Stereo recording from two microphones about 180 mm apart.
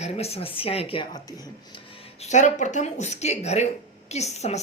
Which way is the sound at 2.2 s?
40° left (ahead or behind).